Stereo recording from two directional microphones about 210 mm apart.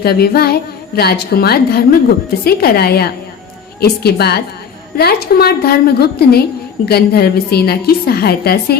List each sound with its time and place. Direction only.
0.0 s a woman's voice: 50° left (ahead or behind)